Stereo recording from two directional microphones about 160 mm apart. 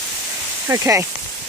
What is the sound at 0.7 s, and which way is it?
Speech, 15° right (ahead or behind).